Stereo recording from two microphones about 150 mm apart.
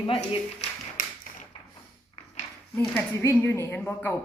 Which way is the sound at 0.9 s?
65° left (ahead or behind).